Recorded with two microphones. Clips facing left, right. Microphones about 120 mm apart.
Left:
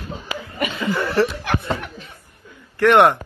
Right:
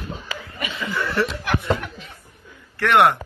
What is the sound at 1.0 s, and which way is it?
Speech, 35° left (ahead or behind).